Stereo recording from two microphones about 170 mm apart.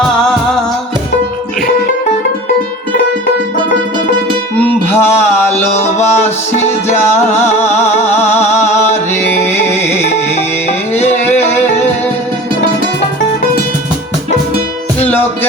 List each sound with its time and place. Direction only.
4.6 s music: 15° left (ahead or behind)
10.7 s music: 40° left (ahead or behind)